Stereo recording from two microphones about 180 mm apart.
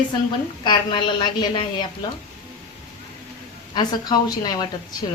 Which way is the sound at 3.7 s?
25° left (ahead or behind).